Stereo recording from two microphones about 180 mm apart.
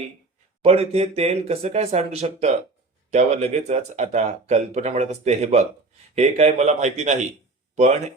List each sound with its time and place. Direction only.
0.6 s speech: 35° right (ahead or behind)